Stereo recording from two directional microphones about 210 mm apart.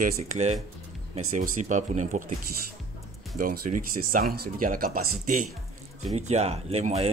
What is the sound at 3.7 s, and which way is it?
Speech, 40° right (ahead or behind).